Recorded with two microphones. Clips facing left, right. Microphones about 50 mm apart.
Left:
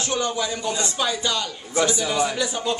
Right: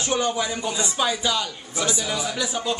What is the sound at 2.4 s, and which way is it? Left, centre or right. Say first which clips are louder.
Speech: left 1 dB; centre.